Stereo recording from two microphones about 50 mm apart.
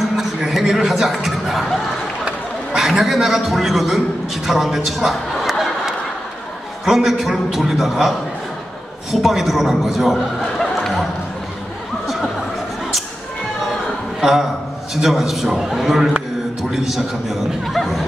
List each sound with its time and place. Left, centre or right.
0.4 s a man's voice: centre
4.5 s a sound: centre
6.8 s a man's voice: centre
9.1 s a man's voice: centre
15.0 s a man's voice: centre